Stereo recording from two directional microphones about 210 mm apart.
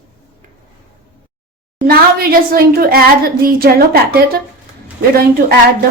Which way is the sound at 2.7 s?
45° right (ahead or behind).